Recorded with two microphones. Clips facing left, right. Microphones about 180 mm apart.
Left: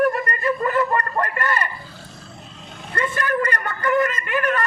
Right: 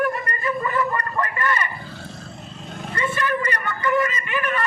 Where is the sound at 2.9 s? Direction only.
50° left (ahead or behind).